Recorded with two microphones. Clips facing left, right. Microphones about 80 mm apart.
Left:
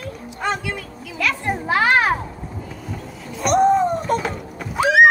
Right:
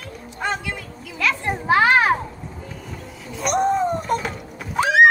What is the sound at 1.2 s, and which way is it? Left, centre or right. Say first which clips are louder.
Children playing: right 2 dB; right.